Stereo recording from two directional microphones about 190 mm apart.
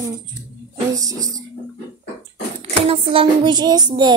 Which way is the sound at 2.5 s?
30° right (ahead or behind).